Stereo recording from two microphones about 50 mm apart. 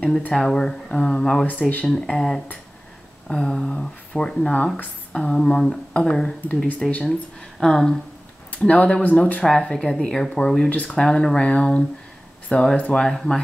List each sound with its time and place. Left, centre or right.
0.3 s speech: centre
1.4 s speech: left
1.9 s speech: centre
8.5 s speech: left
10.7 s speech: left
11.0 s speech: centre